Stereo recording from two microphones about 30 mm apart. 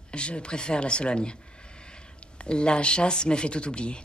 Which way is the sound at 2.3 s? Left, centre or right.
Left.